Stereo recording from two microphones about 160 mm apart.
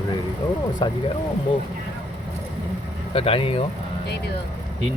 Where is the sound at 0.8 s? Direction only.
30° left (ahead or behind).